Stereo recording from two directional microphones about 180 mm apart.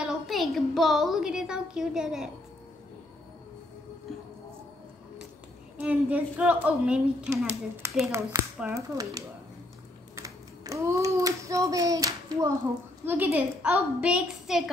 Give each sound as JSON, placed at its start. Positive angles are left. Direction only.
{"t": 0.0, "sound": "speech", "side_deg": 0}
{"t": 5.8, "sound": "a woman's voice", "side_deg": -5}